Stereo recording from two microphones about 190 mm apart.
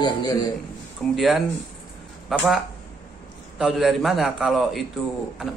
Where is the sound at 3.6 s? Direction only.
Centre (ahead or behind).